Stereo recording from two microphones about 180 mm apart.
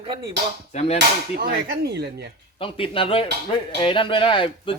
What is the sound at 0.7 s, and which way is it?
Speech, 35° left (ahead or behind).